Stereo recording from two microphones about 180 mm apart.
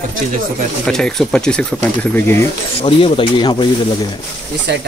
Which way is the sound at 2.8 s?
30° left (ahead or behind).